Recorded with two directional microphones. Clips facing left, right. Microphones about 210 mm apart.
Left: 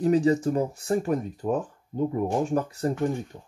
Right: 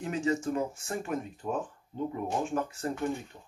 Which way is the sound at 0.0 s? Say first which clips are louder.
Left 9 dB; 35° left (ahead or behind).